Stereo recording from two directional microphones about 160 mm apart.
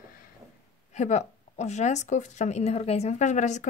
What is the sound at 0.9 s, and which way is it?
Speech, 45° left (ahead or behind).